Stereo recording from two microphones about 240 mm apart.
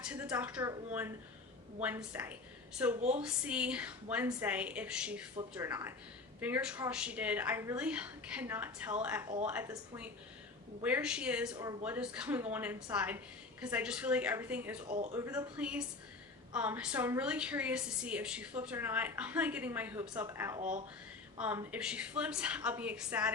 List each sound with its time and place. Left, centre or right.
0.0 s a woman's voice: centre
11.5 s a woman's voice: centre
11.9 s a woman's voice: centre
14.8 s speech: right
15.1 s a woman's voice: centre
20.6 s speech: right
21.3 s a woman's voice: centre